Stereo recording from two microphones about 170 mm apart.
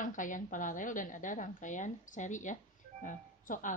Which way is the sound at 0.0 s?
50° left (ahead or behind).